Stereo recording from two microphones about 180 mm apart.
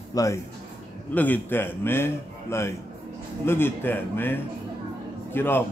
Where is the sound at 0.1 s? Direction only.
20° left (ahead or behind).